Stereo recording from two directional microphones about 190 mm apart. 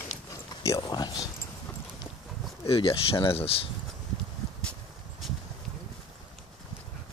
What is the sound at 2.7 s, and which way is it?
Speech, 30° left (ahead or behind).